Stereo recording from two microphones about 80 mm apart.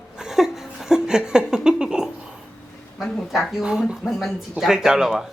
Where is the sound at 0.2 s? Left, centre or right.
Centre.